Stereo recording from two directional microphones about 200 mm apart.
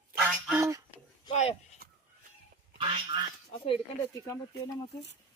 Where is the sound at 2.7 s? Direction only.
25° right (ahead or behind).